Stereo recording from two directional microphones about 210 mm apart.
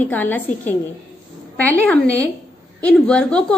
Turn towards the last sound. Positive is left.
turn(degrees=5)  # may be behind; listen again after turning